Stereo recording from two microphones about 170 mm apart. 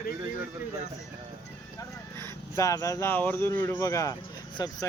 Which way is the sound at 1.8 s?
15° left (ahead or behind).